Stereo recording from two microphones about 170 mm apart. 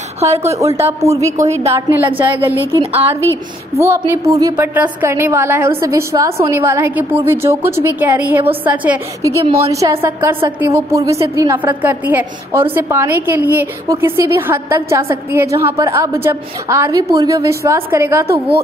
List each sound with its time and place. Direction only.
0.2 s a woman's voice: 40° right (ahead or behind)
0.5 s a woman's voice: 15° right (ahead or behind)
9.7 s a woman's voice: 20° right (ahead or behind)